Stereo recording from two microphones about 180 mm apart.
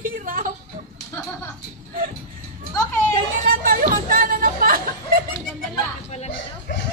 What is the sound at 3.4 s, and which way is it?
Speech, 55° right (ahead or behind).